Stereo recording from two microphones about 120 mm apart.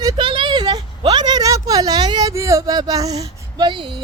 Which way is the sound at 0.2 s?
45° right (ahead or behind).